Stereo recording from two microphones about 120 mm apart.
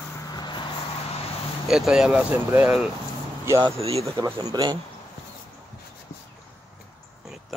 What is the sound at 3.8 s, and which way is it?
Speech, 55° right (ahead or behind).